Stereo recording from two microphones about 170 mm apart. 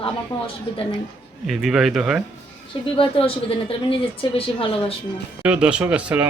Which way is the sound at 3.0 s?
35° left (ahead or behind).